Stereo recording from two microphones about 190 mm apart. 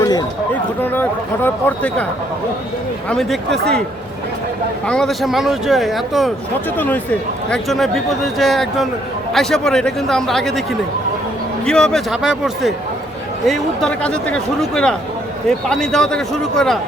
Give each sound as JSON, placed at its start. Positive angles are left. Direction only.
{"t": 0.0, "sound": "a sound", "side_deg": 20}
{"t": 0.8, "sound": "speech", "side_deg": 10}
{"t": 3.1, "sound": "a man's voice", "side_deg": 0}
{"t": 4.9, "sound": "a man's voice", "side_deg": 0}